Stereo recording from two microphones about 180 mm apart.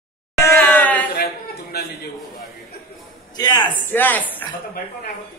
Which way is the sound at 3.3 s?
25° left (ahead or behind).